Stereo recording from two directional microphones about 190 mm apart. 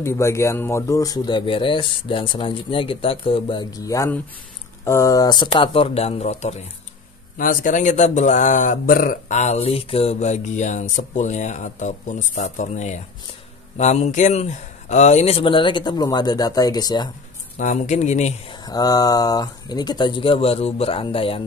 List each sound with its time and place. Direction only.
0.0 s a man's voice: 15° left (ahead or behind)
17.6 s a man's voice: 40° left (ahead or behind)
18.6 s speech: 20° left (ahead or behind)